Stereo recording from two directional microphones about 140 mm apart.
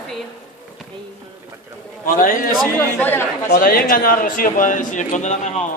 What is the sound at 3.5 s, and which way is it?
A man's voice, 90° left.